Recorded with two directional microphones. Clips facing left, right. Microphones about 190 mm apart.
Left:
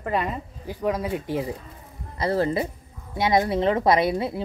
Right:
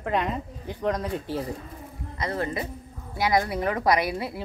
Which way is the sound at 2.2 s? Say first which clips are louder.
Left 6 dB; 30° left (ahead or behind).